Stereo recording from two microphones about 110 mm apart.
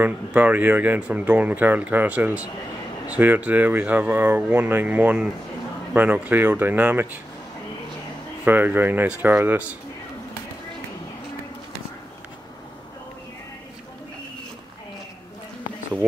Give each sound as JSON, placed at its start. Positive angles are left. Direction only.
{"t": 0.0, "sound": "speech", "side_deg": -15}
{"t": 8.5, "sound": "speech", "side_deg": -15}